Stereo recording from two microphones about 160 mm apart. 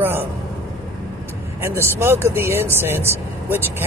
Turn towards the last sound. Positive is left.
turn(degrees=-15)  # may be behind; listen again after turning